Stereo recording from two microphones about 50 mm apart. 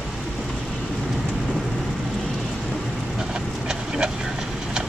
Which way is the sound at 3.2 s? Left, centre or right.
Centre.